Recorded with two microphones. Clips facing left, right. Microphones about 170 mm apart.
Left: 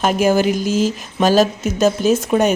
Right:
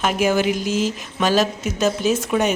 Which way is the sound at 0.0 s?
40° left (ahead or behind).